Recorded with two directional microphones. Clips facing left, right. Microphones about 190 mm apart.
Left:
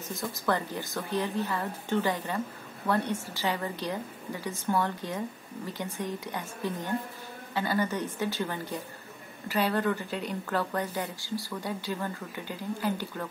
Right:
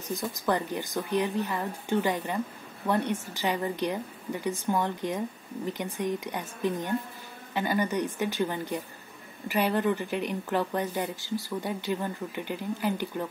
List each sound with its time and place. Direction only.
0.1 s a woman's voice: 15° right (ahead or behind)